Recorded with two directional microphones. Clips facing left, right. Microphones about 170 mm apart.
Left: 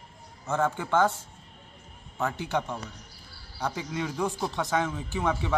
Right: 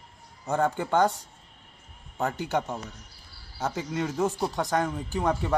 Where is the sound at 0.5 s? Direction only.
15° right (ahead or behind).